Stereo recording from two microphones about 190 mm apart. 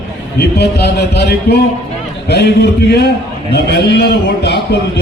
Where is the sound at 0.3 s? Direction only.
60° left (ahead or behind).